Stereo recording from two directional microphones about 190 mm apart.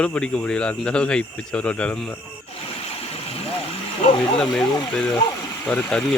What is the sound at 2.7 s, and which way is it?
Vehicle, 30° left (ahead or behind).